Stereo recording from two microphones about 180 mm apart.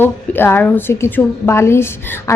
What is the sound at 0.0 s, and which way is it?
Speech, 10° left (ahead or behind).